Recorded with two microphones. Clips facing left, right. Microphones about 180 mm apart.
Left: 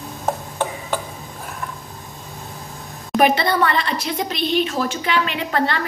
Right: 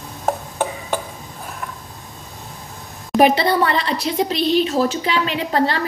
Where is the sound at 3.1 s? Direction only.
30° right (ahead or behind).